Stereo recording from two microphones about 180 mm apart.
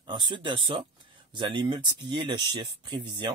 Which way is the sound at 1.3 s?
25° right (ahead or behind).